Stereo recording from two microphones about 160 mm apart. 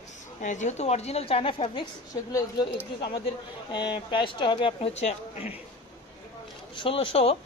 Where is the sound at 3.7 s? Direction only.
30° left (ahead or behind).